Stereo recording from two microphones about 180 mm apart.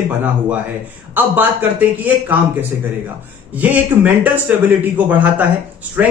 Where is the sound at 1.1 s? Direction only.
10° right (ahead or behind).